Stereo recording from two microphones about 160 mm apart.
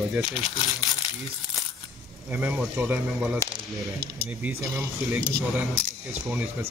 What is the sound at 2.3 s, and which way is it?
A man's voice, 10° right (ahead or behind).